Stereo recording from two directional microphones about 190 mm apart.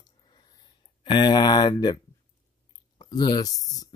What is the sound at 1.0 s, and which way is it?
Speech, 25° left (ahead or behind).